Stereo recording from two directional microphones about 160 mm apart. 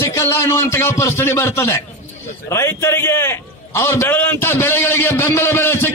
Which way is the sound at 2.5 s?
15° left (ahead or behind).